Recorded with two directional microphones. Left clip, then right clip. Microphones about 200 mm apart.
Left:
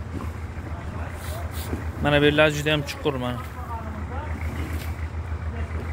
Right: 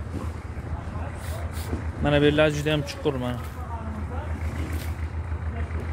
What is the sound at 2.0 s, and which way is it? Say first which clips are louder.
Speech: left 2 dB; 15° right (ahead or behind).